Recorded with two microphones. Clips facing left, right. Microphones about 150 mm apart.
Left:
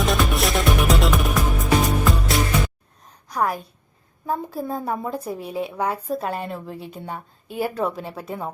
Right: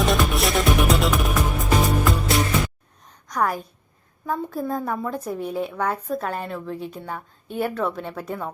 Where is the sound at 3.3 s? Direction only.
Centre (ahead or behind).